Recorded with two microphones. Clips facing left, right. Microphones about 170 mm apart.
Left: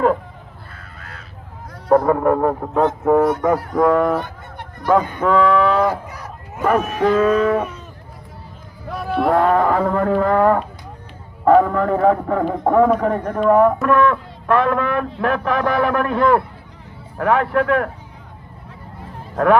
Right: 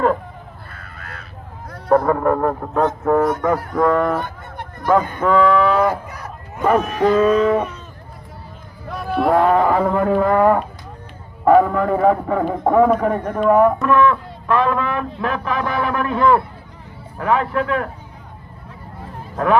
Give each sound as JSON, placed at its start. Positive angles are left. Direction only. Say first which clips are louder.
{"t": 0.7, "sound": "crow", "louder": "right 2 dB", "side_deg": -60}
{"t": 1.9, "sound": "speech", "louder": "left 1 dB", "side_deg": 15}
{"t": 4.2, "sound": "fowl", "louder": "right 2 dB", "side_deg": -50}
{"t": 5.2, "sound": "speech", "louder": "right 1 dB", "side_deg": 0}
{"t": 6.7, "sound": "speech", "louder": "right 1 dB", "side_deg": 10}
{"t": 7.0, "sound": "speech", "louder": "right 1 dB", "side_deg": -10}
{"t": 7.3, "sound": "speech", "louder": "right 1 dB", "side_deg": 10}
{"t": 8.9, "sound": "speech", "louder": "even", "side_deg": 0}
{"t": 13.8, "sound": "a man's voice", "louder": "even", "side_deg": 55}